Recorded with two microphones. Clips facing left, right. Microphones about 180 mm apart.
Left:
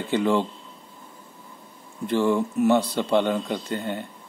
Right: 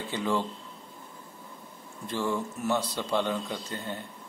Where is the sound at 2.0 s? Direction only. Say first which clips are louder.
Left 8 dB; 65° left (ahead or behind).